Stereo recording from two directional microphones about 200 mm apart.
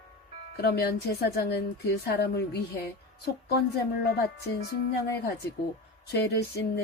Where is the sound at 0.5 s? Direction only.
55° left (ahead or behind).